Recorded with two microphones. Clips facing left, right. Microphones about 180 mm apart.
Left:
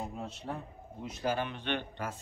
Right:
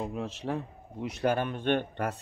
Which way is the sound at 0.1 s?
90° right.